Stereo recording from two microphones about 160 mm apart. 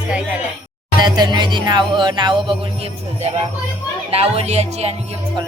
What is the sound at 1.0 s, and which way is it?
Music, 25° right (ahead or behind).